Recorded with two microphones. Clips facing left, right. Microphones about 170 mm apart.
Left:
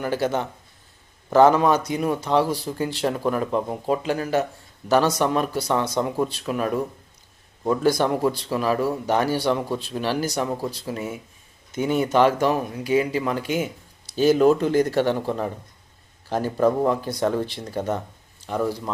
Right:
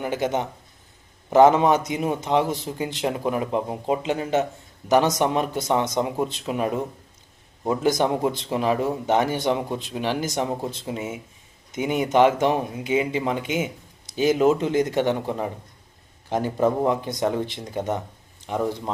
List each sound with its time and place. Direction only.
0.0 s speech: 20° right (ahead or behind)